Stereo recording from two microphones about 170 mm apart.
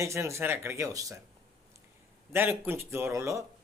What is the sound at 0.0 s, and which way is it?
Speech, 15° right (ahead or behind).